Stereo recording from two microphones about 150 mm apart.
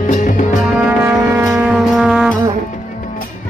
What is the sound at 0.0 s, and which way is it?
Music, 55° left (ahead or behind).